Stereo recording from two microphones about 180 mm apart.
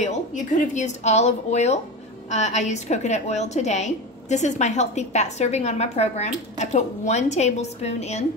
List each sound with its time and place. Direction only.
0.0 s a woman's voice: 40° left (ahead or behind)